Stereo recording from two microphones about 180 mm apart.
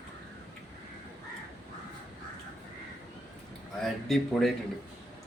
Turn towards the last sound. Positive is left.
turn(degrees=0)  # may be behind; listen again after turning